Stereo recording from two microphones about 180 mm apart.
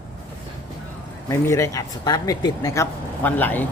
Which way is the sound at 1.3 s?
15° left (ahead or behind).